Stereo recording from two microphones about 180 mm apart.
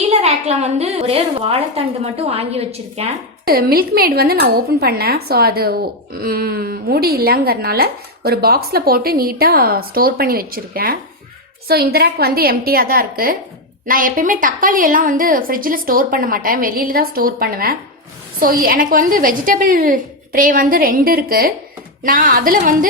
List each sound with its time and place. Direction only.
0.1 s a woman's voice: 35° right (ahead or behind)
3.4 s a woman's voice: 55° right (ahead or behind)